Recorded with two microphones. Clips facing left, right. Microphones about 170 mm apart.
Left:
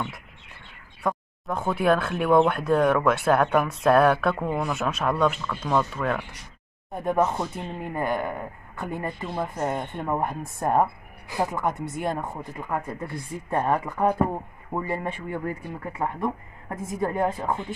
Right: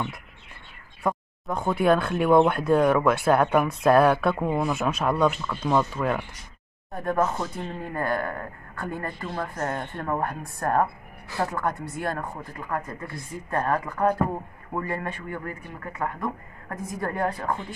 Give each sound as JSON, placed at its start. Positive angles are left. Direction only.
{"t": 1.0, "sound": "speech", "side_deg": 0}
{"t": 6.9, "sound": "speech", "side_deg": 20}
{"t": 15.0, "sound": "speech", "side_deg": 25}